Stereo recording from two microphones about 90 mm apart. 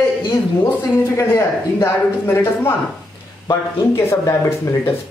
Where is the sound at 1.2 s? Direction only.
30° left (ahead or behind).